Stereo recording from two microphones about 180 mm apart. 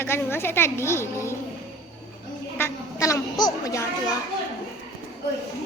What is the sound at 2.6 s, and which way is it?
A woman's voice, 15° left (ahead or behind).